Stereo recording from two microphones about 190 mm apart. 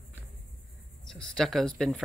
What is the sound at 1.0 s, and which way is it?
Speech, centre (ahead or behind).